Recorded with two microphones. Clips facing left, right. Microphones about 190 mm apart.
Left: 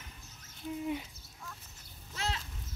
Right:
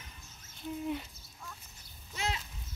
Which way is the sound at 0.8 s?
5° left (ahead or behind).